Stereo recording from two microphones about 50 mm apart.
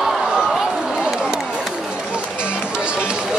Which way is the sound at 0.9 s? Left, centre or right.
Centre.